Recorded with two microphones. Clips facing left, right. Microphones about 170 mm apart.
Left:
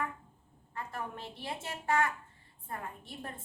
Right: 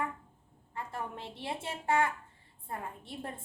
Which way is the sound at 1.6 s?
25° right (ahead or behind).